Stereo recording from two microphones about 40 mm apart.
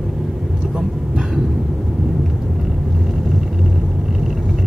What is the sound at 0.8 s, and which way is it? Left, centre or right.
Vehicle, centre.